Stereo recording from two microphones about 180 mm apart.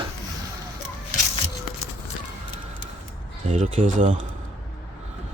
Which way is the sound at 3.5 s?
40° right (ahead or behind).